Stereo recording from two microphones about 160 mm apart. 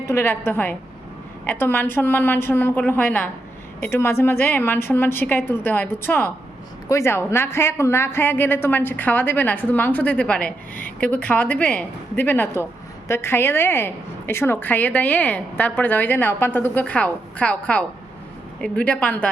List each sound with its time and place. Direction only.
0.0 s a woman's voice: 15° left (ahead or behind)